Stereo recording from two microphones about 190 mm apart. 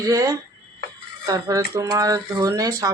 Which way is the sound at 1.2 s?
20° right (ahead or behind).